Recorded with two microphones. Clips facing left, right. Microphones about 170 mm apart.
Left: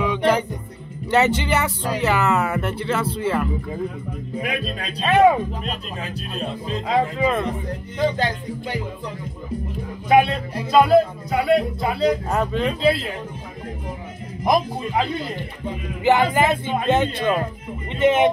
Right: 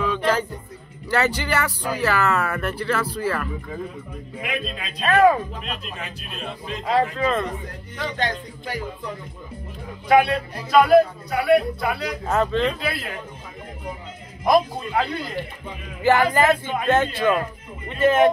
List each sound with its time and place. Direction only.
0.0 s music: 15° left (ahead or behind)
1.1 s speech: 20° left (ahead or behind)
4.4 s speech: 40° left (ahead or behind)
5.0 s speech: 25° left (ahead or behind)
5.6 s speech: 35° left (ahead or behind)
7.2 s speech: 10° left (ahead or behind)
8.2 s speech: 25° left (ahead or behind)
10.0 s speech: 20° left (ahead or behind)
12.3 s speech: 10° left (ahead or behind)
12.8 s speech: 25° left (ahead or behind)
14.4 s speech: 15° left (ahead or behind)